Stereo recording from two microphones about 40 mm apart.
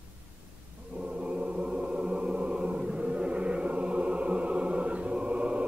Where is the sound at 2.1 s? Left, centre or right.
Right.